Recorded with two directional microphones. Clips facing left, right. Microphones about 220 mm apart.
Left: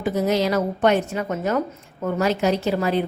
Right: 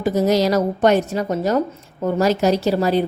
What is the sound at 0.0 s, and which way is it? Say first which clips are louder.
A woman's voice: right 4 dB; 40° right (ahead or behind).